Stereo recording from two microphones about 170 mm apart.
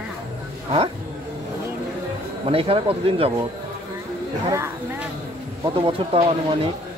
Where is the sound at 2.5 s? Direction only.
35° right (ahead or behind).